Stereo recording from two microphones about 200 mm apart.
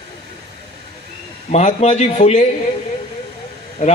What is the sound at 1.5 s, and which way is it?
Speech, 35° left (ahead or behind).